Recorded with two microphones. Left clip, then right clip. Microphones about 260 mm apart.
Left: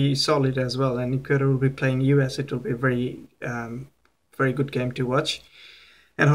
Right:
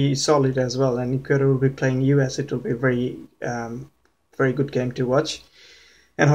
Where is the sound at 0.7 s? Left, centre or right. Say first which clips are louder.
Right 3 dB; centre.